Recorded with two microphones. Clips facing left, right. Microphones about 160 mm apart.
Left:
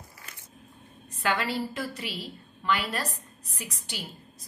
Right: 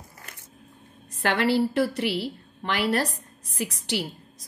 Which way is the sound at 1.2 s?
70° right (ahead or behind).